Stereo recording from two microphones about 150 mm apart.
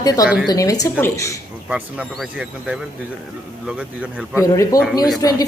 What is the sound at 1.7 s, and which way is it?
Speech, 5° right (ahead or behind).